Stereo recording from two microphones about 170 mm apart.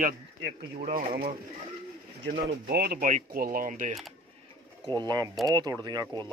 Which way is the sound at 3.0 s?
55° right (ahead or behind).